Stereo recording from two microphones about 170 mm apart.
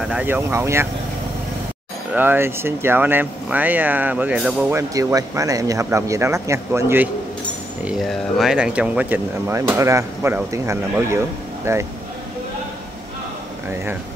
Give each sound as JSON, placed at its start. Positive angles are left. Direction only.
{"t": 0.0, "sound": "speech", "side_deg": -10}
{"t": 2.1, "sound": "speech", "side_deg": -10}
{"t": 7.8, "sound": "speech", "side_deg": 0}